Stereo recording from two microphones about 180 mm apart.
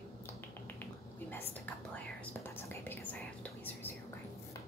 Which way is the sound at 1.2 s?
10° left (ahead or behind).